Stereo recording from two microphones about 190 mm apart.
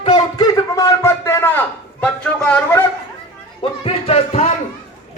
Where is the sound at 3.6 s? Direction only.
30° left (ahead or behind).